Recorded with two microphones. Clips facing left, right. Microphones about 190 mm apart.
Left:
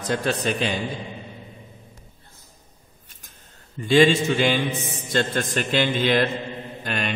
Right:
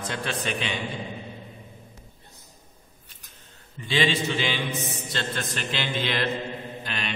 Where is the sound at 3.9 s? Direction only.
45° left (ahead or behind).